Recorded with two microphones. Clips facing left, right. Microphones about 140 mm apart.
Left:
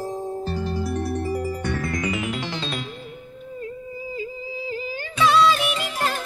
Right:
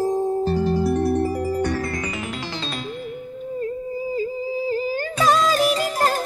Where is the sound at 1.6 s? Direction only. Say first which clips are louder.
Right 3 dB; 35° right (ahead or behind).